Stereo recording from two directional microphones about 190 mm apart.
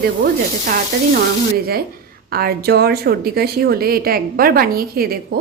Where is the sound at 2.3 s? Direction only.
55° right (ahead or behind).